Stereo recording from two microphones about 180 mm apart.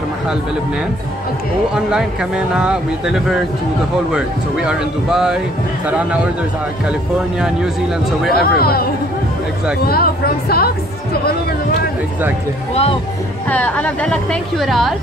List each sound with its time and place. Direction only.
1.9 s speech: 5° right (ahead or behind)
6.9 s speech: 5° right (ahead or behind)
8.3 s a woman's voice: 60° left (ahead or behind)
9.8 s a woman's voice: 60° left (ahead or behind)
13.5 s speech: 10° left (ahead or behind)